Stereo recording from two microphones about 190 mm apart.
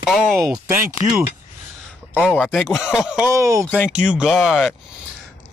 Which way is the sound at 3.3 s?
15° right (ahead or behind).